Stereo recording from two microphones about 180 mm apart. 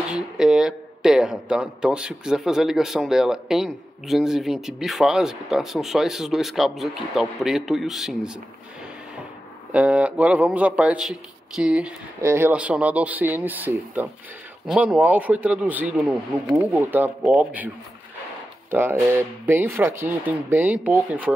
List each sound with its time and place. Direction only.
0.1 s speech: 5° right (ahead or behind)
9.7 s a man's voice: 5° right (ahead or behind)
18.7 s a man's voice: 10° right (ahead or behind)